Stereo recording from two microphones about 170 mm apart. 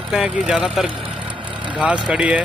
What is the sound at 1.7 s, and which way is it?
Speech, 5° right (ahead or behind).